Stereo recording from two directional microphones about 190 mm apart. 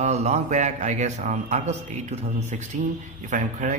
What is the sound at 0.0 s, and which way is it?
A man's voice, 35° right (ahead or behind).